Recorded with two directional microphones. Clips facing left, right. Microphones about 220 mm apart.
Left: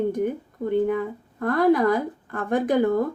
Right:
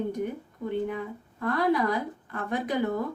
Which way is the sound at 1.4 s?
50° left (ahead or behind).